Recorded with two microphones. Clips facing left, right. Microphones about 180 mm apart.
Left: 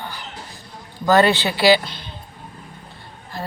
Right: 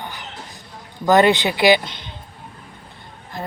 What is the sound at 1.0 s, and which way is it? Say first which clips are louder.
Speech: right 1 dB; 20° right (ahead or behind).